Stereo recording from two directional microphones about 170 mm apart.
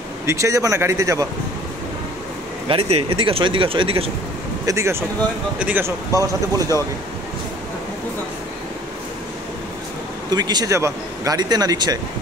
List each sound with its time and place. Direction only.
0.3 s speech: 20° right (ahead or behind)
2.7 s speech: 35° right (ahead or behind)
4.6 s speech: 15° right (ahead or behind)
10.3 s a man's voice: 25° right (ahead or behind)